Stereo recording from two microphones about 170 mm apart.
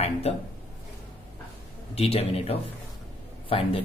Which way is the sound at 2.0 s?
35° left (ahead or behind).